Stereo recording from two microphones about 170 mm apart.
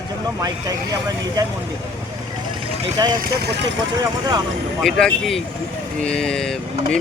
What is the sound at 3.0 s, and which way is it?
Speech, 25° right (ahead or behind).